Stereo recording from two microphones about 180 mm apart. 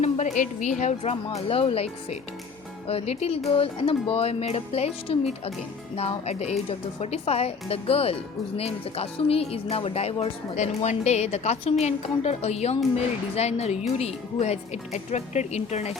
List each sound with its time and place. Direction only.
0.0 s speech: 40° left (ahead or behind)